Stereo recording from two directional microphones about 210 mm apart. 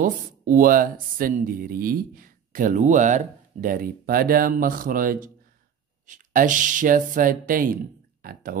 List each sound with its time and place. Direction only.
0.0 s speech: 40° right (ahead or behind)